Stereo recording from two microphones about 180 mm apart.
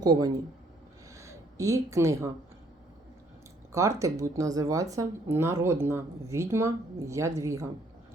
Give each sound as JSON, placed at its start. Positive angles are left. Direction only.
{"t": 0.0, "sound": "speech", "side_deg": -20}
{"t": 1.1, "sound": "a sound", "side_deg": -15}
{"t": 3.7, "sound": "speech", "side_deg": -15}